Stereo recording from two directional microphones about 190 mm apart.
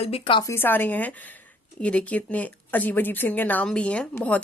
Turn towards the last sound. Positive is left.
turn(degrees=5)  # may be behind; listen again after turning